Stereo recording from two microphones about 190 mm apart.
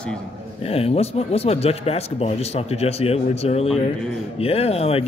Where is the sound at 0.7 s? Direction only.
30° left (ahead or behind).